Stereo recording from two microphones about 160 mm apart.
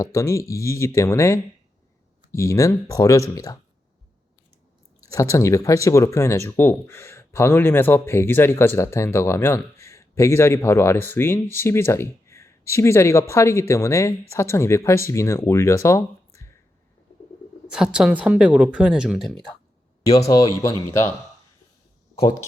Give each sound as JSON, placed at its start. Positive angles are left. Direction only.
{"t": 0.0, "sound": "speech", "side_deg": 20}
{"t": 5.1, "sound": "speech", "side_deg": 20}
{"t": 17.7, "sound": "speech", "side_deg": -5}
{"t": 20.1, "sound": "speech", "side_deg": 20}
{"t": 22.2, "sound": "speech", "side_deg": 20}